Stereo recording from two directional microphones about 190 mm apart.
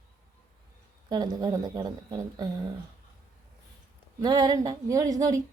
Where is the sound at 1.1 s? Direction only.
20° right (ahead or behind).